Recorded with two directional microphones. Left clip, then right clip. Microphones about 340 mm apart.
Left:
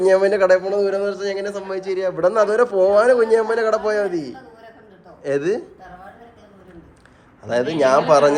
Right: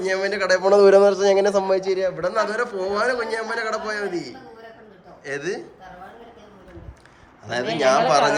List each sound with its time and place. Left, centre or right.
0.0 s a man's voice: centre
0.6 s a man's voice: centre
2.1 s a man's voice: centre
7.4 s speech: centre